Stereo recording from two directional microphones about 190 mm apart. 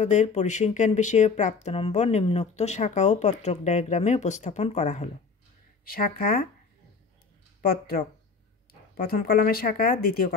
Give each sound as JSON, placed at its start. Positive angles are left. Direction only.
{"t": 0.0, "sound": "speech", "side_deg": 35}
{"t": 5.9, "sound": "speech", "side_deg": 50}
{"t": 7.6, "sound": "speech", "side_deg": 50}